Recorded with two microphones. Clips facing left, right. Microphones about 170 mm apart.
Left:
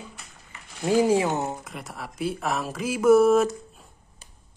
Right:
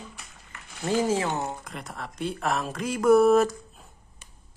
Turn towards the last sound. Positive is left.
turn(degrees=0)  # may be behind; listen again after turning